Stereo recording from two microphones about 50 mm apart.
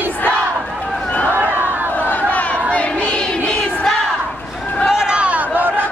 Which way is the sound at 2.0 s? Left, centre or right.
Left.